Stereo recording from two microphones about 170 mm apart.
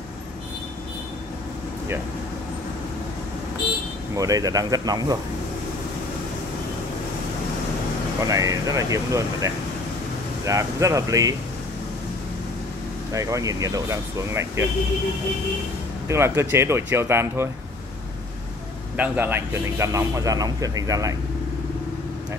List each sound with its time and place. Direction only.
4.1 s a man's voice: 20° right (ahead or behind)
8.3 s a man's voice: 20° right (ahead or behind)
13.1 s a man's voice: 20° right (ahead or behind)
16.1 s speech: 15° right (ahead or behind)
18.9 s a man's voice: 10° right (ahead or behind)